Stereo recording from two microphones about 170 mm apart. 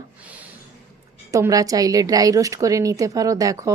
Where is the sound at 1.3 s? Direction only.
20° right (ahead or behind).